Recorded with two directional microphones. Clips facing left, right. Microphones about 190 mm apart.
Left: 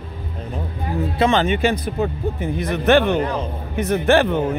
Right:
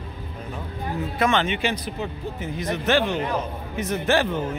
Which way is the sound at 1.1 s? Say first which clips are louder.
Left 4 dB; 30° left (ahead or behind).